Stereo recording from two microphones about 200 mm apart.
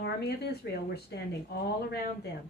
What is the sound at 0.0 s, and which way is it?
Speech, 55° left (ahead or behind).